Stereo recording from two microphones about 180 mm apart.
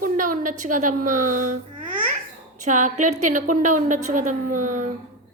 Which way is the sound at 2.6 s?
45° right (ahead or behind).